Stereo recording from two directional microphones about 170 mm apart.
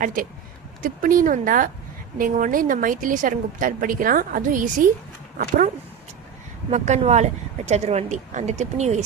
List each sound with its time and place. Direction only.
0.0 s speech: 55° right (ahead or behind)